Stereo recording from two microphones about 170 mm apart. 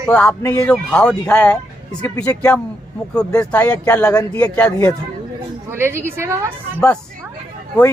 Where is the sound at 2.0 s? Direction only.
20° left (ahead or behind).